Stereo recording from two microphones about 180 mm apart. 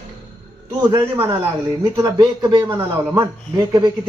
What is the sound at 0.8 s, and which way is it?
Speech, 20° right (ahead or behind).